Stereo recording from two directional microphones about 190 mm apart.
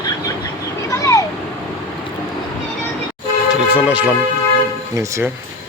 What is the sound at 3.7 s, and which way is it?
Speech, 5° right (ahead or behind).